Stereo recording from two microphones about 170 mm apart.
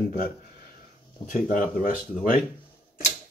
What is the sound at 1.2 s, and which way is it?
Speech, 55° left (ahead or behind).